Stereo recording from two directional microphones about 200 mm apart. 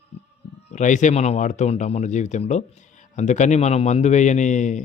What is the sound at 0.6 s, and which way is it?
Speech, 35° left (ahead or behind).